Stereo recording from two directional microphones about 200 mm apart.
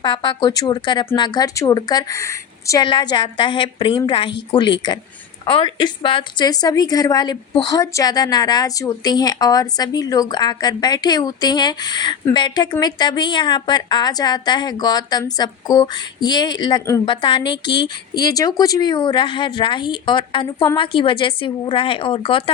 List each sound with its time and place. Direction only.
0.0 s a woman's voice: 20° left (ahead or behind)